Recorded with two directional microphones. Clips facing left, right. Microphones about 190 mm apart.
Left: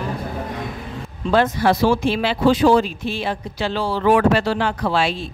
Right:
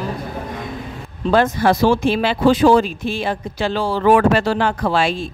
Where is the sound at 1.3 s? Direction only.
45° right (ahead or behind).